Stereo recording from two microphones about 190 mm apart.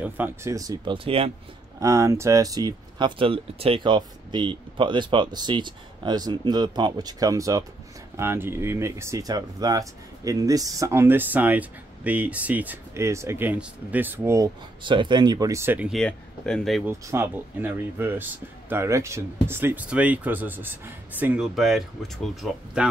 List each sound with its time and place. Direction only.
0.0 s speech: 10° right (ahead or behind); by 1.3 s 30° right (ahead or behind)
1.8 s speech: 15° right (ahead or behind)
15.9 s speech: 5° left (ahead or behind)
16.8 s speech: 10° right (ahead or behind)